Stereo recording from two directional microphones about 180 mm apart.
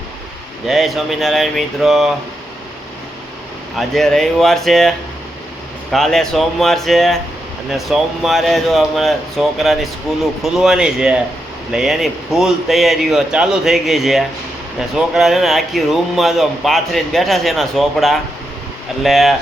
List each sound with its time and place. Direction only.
0.7 s speech: centre (ahead or behind)
3.8 s speech: centre (ahead or behind)